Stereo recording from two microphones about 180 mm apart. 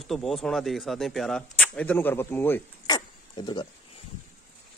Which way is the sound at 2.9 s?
25° left (ahead or behind).